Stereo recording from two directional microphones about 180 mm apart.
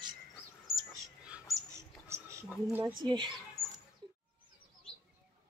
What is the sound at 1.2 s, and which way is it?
Dog, 5° right (ahead or behind).